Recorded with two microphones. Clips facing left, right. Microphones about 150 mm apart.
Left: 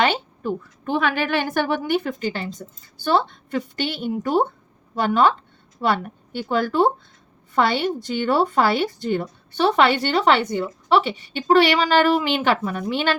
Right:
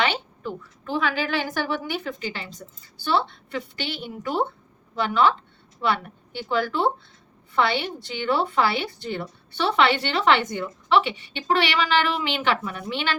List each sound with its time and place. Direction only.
0.0 s a woman's voice: 50° left (ahead or behind)